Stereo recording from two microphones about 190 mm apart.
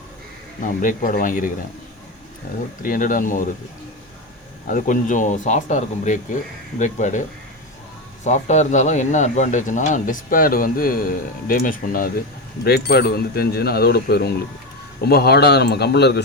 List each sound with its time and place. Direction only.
0.6 s speech: 45° left (ahead or behind)
2.5 s speech: 45° left (ahead or behind)
4.6 s speech: 45° left (ahead or behind); by 16.2 s 60° left (ahead or behind)